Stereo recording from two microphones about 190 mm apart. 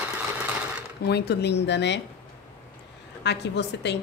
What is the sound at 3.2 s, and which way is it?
Speech, 65° left (ahead or behind).